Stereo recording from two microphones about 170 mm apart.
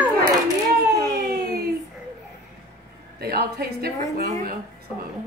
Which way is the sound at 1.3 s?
70° right (ahead or behind).